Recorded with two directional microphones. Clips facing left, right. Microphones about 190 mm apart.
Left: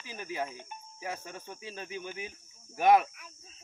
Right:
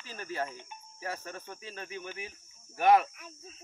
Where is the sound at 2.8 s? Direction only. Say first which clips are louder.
Even; 15° left (ahead or behind).